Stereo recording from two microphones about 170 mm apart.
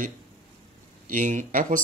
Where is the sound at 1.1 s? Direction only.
50° right (ahead or behind).